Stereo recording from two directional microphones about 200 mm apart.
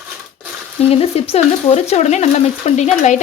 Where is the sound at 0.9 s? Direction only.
30° left (ahead or behind).